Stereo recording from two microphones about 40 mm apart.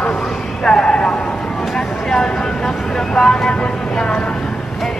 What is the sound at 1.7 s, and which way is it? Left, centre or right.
Vehicle, centre.